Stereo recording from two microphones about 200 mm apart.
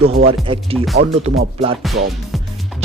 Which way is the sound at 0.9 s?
55° right (ahead or behind).